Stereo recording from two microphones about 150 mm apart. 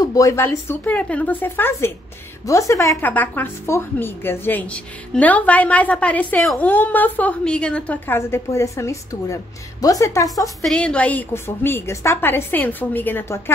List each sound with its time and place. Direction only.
0.1 s speech: 20° left (ahead or behind)
10.6 s speech: 5° left (ahead or behind)